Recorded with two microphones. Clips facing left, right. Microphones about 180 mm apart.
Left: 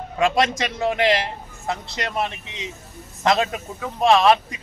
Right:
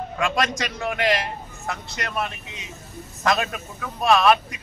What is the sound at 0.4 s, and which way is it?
Speech, 25° left (ahead or behind).